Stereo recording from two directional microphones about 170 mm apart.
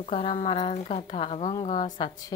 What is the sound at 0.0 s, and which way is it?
A woman's voice, 35° left (ahead or behind).